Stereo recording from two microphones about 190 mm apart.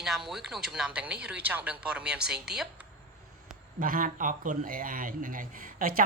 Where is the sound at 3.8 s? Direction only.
45° right (ahead or behind).